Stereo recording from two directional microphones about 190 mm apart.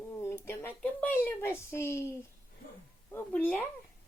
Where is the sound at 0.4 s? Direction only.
10° left (ahead or behind).